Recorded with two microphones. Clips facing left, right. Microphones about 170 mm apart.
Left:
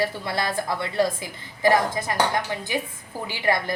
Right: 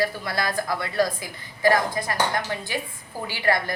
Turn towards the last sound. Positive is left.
turn(degrees=20)  # may be behind; listen again after turning